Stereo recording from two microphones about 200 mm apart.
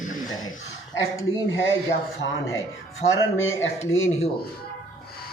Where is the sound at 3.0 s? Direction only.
80° left.